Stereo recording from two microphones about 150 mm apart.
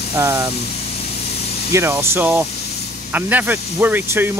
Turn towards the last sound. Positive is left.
turn(degrees=-15)  # may be behind; listen again after turning